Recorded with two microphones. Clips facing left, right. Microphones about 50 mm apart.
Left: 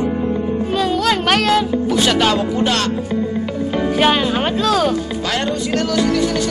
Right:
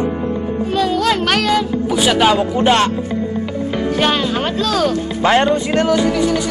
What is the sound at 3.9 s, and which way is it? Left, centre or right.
Speech, centre.